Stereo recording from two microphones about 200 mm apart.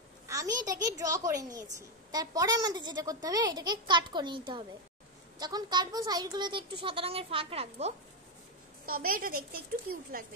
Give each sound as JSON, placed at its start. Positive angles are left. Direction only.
{"t": 0.3, "sound": "a woman's voice", "side_deg": -15}
{"t": 8.8, "sound": "a woman's voice", "side_deg": -45}